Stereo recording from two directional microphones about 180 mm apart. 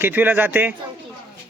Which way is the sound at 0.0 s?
10° right (ahead or behind).